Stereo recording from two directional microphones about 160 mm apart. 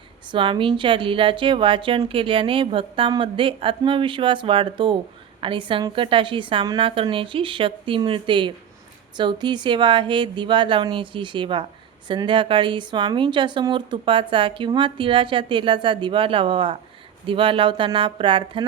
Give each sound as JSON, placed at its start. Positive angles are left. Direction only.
{"t": 0.3, "sound": "a woman's voice", "side_deg": -30}